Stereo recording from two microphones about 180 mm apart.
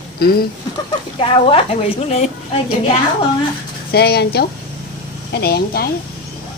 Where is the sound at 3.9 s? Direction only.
65° left (ahead or behind).